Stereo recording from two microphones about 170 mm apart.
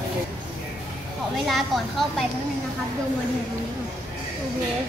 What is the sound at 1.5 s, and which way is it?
Speech, centre (ahead or behind).